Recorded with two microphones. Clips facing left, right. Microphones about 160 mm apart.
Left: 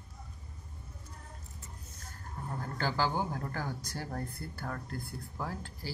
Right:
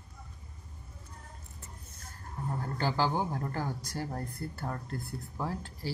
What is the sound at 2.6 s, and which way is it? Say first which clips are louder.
Speech: right 2 dB; 5° right (ahead or behind).